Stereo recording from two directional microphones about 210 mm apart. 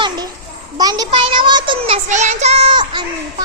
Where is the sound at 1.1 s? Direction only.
25° right (ahead or behind).